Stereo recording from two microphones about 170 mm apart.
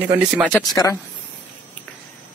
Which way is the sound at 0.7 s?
20° left (ahead or behind).